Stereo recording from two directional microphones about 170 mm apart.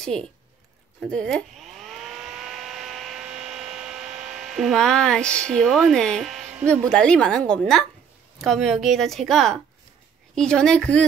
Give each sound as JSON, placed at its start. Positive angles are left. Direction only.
{"t": 0.1, "sound": "speech", "side_deg": -35}
{"t": 1.1, "sound": "a sound", "side_deg": 0}
{"t": 8.4, "sound": "a woman's voice", "side_deg": 0}